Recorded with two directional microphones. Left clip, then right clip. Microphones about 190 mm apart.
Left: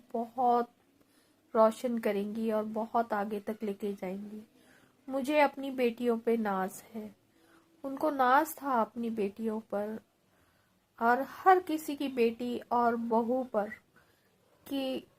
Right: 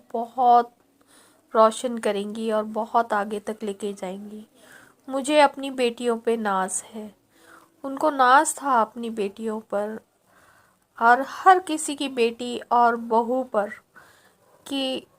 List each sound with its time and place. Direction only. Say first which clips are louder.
0.1 s a woman's voice: right 11 dB; 20° right (ahead or behind)